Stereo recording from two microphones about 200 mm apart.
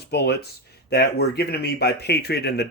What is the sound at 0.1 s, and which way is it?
A man's voice, 55° left (ahead or behind).